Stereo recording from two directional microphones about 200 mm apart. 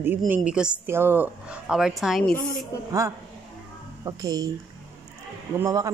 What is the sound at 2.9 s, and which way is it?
A woman's voice, 15° right (ahead or behind).